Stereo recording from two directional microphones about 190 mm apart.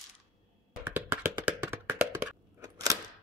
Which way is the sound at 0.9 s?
10° right (ahead or behind).